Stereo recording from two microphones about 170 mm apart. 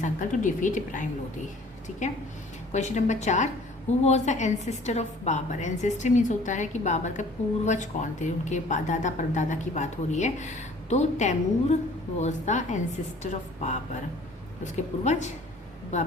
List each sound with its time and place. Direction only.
0.0 s a woman's voice: 50° left (ahead or behind)
2.7 s a woman's voice: 45° left (ahead or behind)